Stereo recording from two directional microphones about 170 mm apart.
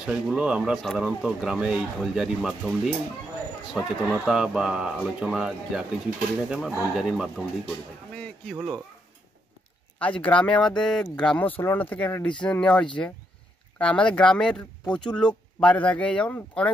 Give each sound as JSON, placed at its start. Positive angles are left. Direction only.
{"t": 0.0, "sound": "speech", "side_deg": -5}
{"t": 8.5, "sound": "speech", "side_deg": -5}
{"t": 9.9, "sound": "speech", "side_deg": 10}